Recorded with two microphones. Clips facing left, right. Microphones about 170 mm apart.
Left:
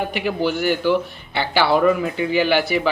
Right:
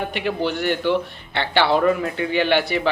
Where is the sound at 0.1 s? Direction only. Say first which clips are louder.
Left 2 dB; 5° left (ahead or behind).